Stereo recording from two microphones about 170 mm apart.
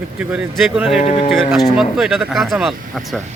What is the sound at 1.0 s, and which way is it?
Speech, 35° left (ahead or behind).